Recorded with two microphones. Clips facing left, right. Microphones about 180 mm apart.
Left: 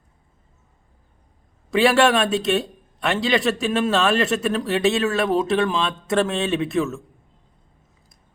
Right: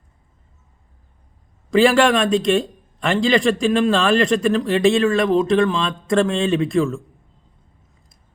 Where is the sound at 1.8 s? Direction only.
5° left (ahead or behind).